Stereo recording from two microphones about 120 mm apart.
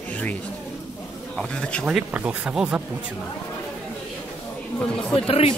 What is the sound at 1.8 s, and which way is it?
Speech, 10° right (ahead or behind).